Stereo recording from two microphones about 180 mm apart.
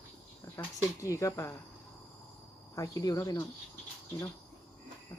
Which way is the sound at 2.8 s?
20° left (ahead or behind).